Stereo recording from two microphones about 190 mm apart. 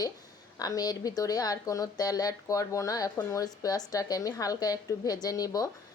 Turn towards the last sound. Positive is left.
turn(degrees=20)  # may be behind; listen again after turning